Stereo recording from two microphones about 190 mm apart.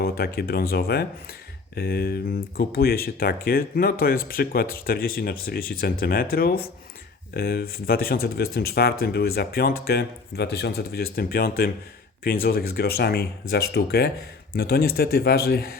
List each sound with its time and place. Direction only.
0.0 s speech: 55° left (ahead or behind)